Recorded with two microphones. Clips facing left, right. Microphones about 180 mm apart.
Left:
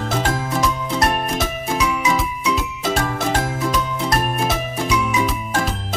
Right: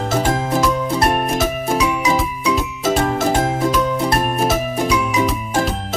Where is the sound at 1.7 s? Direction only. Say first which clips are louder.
Right 1 dB; 30° right (ahead or behind).